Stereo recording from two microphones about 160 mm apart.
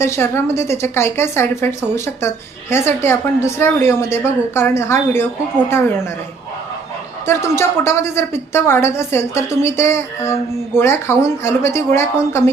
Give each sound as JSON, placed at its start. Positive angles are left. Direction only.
{"t": 0.0, "sound": "speech", "side_deg": 15}
{"t": 7.3, "sound": "speech", "side_deg": 15}